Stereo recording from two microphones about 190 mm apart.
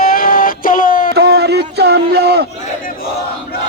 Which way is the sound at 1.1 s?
55° right (ahead or behind).